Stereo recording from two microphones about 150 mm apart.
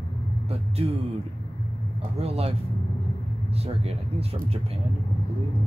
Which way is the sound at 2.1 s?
40° right (ahead or behind).